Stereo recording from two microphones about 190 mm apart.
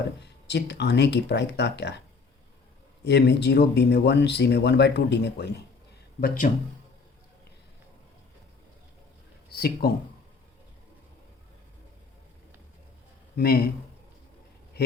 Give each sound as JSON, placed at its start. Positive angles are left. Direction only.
{"t": 0.2, "sound": "speech", "side_deg": 65}
{"t": 3.0, "sound": "speech", "side_deg": 65}
{"t": 6.1, "sound": "speech", "side_deg": 45}
{"t": 9.5, "sound": "speech", "side_deg": 55}
{"t": 13.3, "sound": "speech", "side_deg": 55}